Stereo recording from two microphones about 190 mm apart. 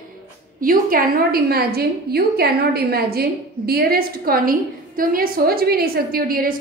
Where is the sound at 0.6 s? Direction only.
50° right (ahead or behind).